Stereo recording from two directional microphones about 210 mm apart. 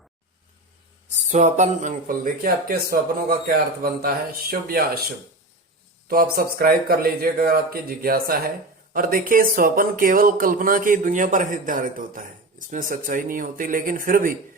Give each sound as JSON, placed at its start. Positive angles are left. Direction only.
{"t": 1.3, "sound": "speech", "side_deg": -35}
{"t": 6.1, "sound": "speech", "side_deg": -45}